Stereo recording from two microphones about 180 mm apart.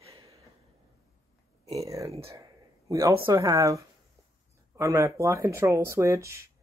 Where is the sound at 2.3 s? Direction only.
20° right (ahead or behind).